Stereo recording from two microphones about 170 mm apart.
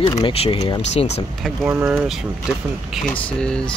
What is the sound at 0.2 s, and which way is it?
Speech, 35° left (ahead or behind).